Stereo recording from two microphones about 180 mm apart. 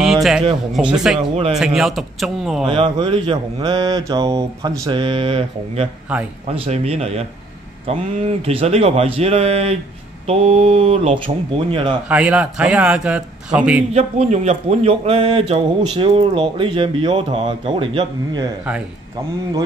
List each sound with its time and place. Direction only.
0.0 s a sound: centre (ahead or behind)
0.9 s speech: 5° right (ahead or behind)
2.6 s speech: 30° right (ahead or behind)
12.1 s a man's voice: 10° right (ahead or behind)
13.9 s speech: 40° right (ahead or behind)